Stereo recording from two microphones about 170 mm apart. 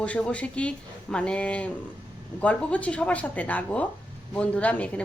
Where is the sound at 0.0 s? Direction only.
10° left (ahead or behind).